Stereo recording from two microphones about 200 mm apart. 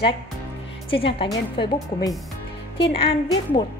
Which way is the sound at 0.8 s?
25° left (ahead or behind).